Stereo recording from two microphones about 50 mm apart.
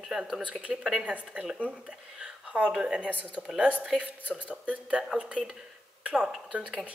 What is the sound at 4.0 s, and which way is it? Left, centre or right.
Speech, right.